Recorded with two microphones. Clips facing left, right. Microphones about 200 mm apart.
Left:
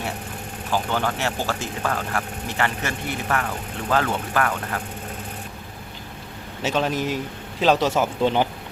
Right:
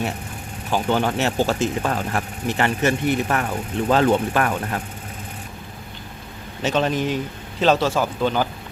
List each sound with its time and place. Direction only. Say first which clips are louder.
0.9 s speech: right 4 dB; 20° right (ahead or behind)
6.6 s a man's voice: right 2 dB; 10° left (ahead or behind); by 8.4 s 25° left (ahead or behind)